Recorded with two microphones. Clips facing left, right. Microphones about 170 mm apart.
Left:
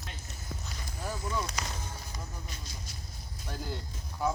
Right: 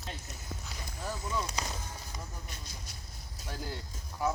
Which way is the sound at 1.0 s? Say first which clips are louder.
Left 1 dB; centre (ahead or behind).